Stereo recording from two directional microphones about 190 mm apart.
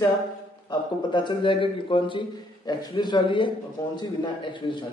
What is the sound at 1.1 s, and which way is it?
A man's voice, 25° left (ahead or behind).